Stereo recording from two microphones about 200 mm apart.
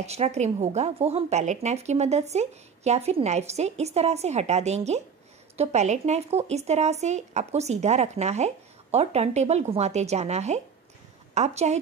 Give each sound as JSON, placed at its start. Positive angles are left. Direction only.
{"t": 0.0, "sound": "speech", "side_deg": -35}